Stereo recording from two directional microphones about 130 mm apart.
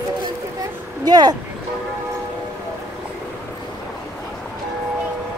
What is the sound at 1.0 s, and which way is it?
Speech, 30° right (ahead or behind).